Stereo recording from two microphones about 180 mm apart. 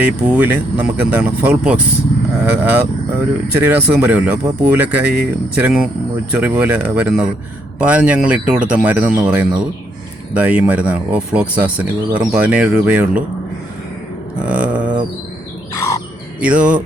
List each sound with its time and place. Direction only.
0.0 s speech: 10° right (ahead or behind)
14.4 s livestock: 5° right (ahead or behind)
15.7 s bird: 15° left (ahead or behind)
16.4 s speech: 5° right (ahead or behind)